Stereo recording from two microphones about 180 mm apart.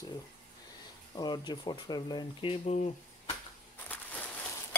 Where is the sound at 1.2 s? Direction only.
25° left (ahead or behind).